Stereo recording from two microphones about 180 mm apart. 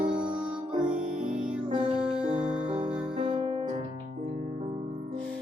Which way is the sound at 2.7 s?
30° right (ahead or behind).